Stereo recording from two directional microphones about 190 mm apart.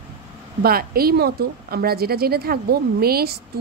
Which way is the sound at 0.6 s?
55° right (ahead or behind).